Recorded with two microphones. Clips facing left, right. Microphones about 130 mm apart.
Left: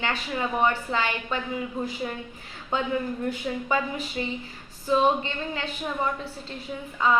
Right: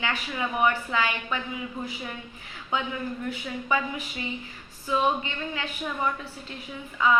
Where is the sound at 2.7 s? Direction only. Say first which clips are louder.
Left 3 dB; 40° left (ahead or behind).